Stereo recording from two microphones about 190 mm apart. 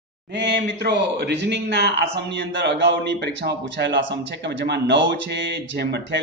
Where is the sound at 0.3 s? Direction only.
60° right (ahead or behind).